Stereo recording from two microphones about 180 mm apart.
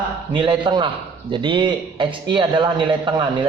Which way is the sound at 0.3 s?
25° right (ahead or behind).